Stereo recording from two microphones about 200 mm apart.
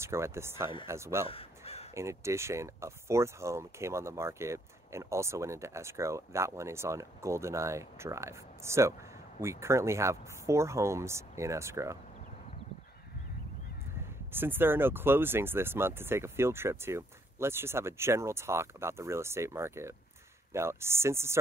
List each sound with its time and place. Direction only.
0.0 s speech: 15° right (ahead or behind)
1.3 s crow: 30° left (ahead or behind)
2.0 s speech: 15° right (ahead or behind)
14.3 s speech: 10° right (ahead or behind)